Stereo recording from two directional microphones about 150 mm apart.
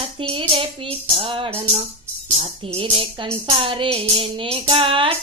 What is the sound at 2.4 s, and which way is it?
Speech, 35° right (ahead or behind).